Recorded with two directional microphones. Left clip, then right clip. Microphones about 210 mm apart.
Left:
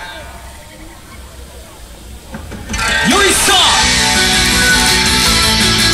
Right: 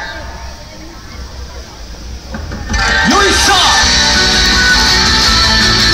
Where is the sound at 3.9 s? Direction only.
55° left (ahead or behind).